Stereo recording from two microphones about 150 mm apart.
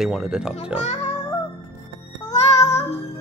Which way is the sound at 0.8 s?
45° left (ahead or behind).